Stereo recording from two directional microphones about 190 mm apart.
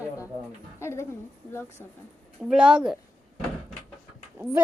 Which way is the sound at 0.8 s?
15° left (ahead or behind).